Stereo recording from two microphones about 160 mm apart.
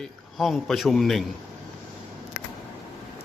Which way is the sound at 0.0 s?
Centre (ahead or behind).